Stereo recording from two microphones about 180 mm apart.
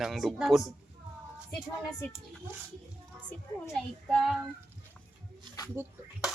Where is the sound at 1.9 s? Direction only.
20° left (ahead or behind).